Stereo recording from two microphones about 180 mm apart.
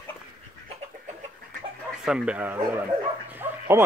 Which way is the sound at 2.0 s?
5° right (ahead or behind).